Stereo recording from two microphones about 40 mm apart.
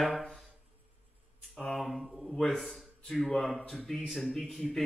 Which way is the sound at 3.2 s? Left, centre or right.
Centre.